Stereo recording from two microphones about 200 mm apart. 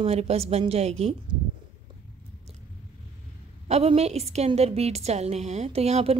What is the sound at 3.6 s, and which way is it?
A woman's voice, 30° right (ahead or behind).